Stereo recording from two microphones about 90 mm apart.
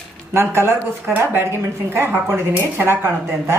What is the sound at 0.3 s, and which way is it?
Speech, 30° right (ahead or behind).